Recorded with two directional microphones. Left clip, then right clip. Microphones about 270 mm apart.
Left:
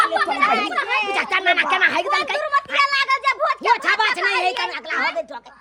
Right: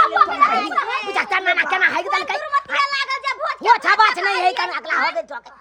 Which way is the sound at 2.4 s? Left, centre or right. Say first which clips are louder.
Left 1 dB; centre.